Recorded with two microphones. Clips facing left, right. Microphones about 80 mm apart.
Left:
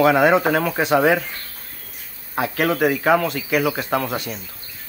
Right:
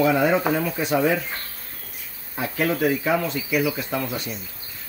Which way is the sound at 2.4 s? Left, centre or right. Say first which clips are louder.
Left 4 dB; left.